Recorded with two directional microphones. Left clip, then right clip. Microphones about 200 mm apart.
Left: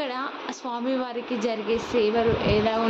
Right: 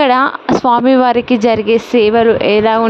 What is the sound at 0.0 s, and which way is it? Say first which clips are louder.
Speech: right 19 dB; 55° right (ahead or behind).